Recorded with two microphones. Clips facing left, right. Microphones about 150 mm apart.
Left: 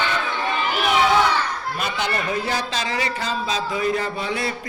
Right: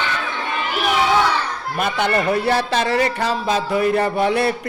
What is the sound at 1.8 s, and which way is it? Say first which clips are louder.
A man's voice: right 7 dB; 55° right (ahead or behind).